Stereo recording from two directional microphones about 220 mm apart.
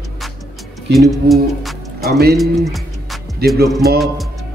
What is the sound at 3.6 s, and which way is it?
Speech, 45° right (ahead or behind).